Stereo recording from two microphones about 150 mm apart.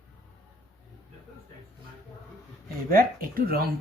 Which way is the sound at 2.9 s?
75° right (ahead or behind).